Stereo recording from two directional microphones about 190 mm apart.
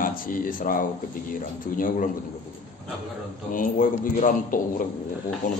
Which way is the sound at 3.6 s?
45° left (ahead or behind).